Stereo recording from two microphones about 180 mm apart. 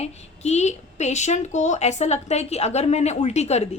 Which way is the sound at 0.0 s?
40° left (ahead or behind).